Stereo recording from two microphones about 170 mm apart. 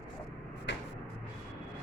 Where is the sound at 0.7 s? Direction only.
90° left.